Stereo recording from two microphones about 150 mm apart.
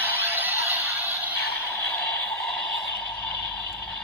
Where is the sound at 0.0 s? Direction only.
15° right (ahead or behind).